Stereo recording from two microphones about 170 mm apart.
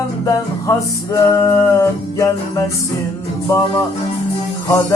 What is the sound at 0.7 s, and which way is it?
Music, 20° left (ahead or behind).